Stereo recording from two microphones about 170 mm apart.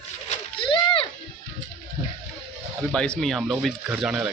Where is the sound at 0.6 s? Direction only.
30° left (ahead or behind).